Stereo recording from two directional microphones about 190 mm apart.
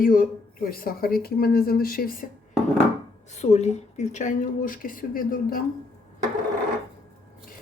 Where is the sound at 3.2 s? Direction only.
35° left (ahead or behind).